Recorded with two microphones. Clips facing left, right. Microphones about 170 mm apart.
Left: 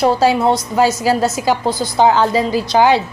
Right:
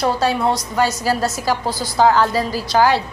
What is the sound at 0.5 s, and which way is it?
A woman's voice, 25° left (ahead or behind).